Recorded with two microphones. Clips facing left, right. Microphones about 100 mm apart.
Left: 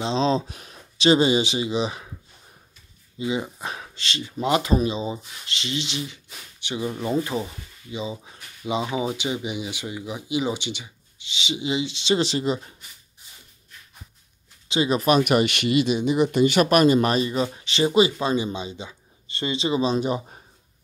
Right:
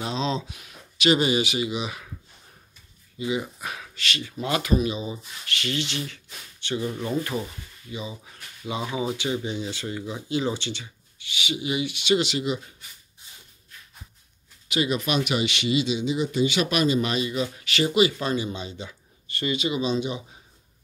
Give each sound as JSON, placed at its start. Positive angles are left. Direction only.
{"t": 0.0, "sound": "speech", "side_deg": 30}
{"t": 3.2, "sound": "speech", "side_deg": 25}
{"t": 14.7, "sound": "speech", "side_deg": 30}
{"t": 15.0, "sound": "speech", "side_deg": 40}